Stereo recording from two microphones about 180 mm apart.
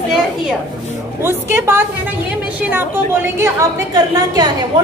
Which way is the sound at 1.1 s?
15° right (ahead or behind).